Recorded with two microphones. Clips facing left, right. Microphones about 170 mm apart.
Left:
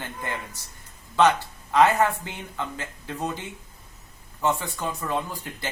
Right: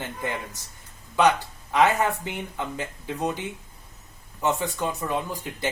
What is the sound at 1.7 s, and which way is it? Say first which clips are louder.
Speech: left 2 dB; 20° right (ahead or behind).